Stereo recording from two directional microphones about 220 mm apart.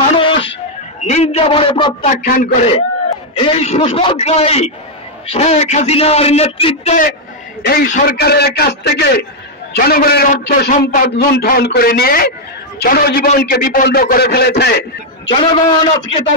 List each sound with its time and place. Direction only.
0.1 s a sound: 25° left (ahead or behind)
1.0 s a man's voice: 30° left (ahead or behind)
2.2 s a man's voice: 40° left (ahead or behind)
3.3 s a man's voice: 25° left (ahead or behind)
7.6 s a man's voice: 45° left (ahead or behind)
15.2 s a man's voice: 20° left (ahead or behind)